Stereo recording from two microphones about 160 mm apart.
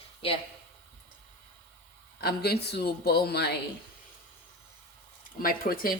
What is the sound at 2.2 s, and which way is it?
A man's voice, 80° left.